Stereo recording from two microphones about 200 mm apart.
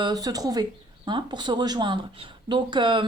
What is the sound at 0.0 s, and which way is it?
Speech, 20° right (ahead or behind).